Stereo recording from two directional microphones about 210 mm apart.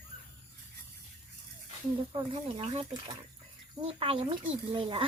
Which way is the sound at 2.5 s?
30° right (ahead or behind).